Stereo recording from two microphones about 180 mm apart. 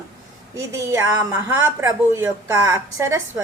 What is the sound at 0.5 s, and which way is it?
A woman's voice, 15° right (ahead or behind).